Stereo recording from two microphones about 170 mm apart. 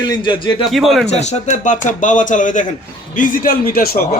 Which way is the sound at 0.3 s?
30° left (ahead or behind).